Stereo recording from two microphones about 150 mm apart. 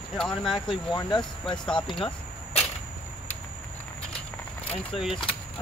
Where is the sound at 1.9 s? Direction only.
35° left (ahead or behind).